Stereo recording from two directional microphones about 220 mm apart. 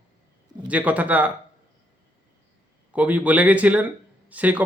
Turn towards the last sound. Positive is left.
turn(degrees=-5)  # may be behind; listen again after turning